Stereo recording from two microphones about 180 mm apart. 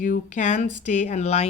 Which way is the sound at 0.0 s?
45° left (ahead or behind).